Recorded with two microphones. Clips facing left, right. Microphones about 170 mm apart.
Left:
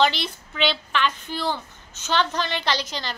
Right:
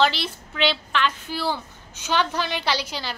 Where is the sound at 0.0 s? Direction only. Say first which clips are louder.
Even; 5° right (ahead or behind).